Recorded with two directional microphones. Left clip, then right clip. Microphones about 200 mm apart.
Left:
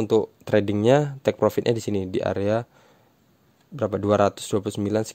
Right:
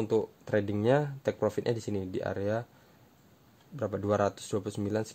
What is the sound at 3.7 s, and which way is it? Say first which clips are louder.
Speech: left 8 dB; 40° left (ahead or behind).